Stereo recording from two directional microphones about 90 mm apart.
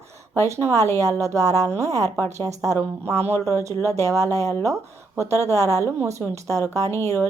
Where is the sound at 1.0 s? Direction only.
35° right (ahead or behind).